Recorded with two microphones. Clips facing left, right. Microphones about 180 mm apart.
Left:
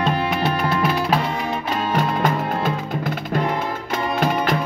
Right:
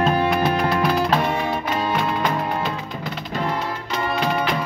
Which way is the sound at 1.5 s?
30° left (ahead or behind).